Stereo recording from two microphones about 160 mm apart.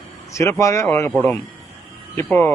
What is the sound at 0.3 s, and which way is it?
Speech, 15° left (ahead or behind).